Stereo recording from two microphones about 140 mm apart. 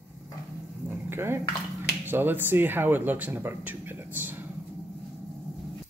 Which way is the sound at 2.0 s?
15° right (ahead or behind).